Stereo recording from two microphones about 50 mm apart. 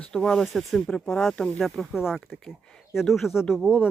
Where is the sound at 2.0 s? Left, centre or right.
Centre.